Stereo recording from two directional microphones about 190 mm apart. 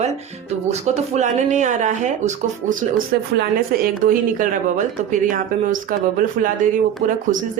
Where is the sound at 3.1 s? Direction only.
50° right (ahead or behind).